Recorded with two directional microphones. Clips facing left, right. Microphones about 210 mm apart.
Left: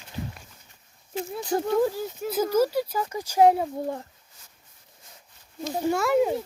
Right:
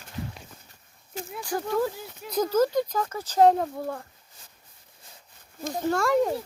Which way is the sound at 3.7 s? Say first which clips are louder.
Left 2 dB; 20° left (ahead or behind).